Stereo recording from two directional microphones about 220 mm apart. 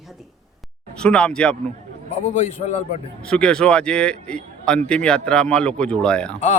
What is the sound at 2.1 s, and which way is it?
Speech, 30° left (ahead or behind).